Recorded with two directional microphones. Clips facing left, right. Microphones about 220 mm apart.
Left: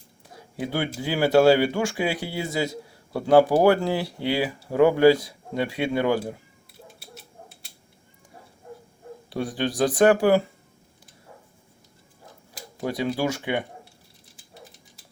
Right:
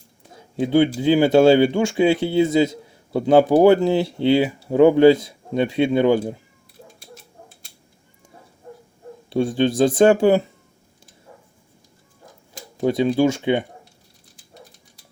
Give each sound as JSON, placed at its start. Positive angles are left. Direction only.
{"t": 0.6, "sound": "speech", "side_deg": -20}
{"t": 9.3, "sound": "speech", "side_deg": -25}
{"t": 12.8, "sound": "speech", "side_deg": -25}